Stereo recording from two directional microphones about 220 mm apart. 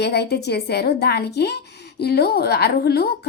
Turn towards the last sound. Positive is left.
turn(degrees=45)  # may be behind; listen again after turning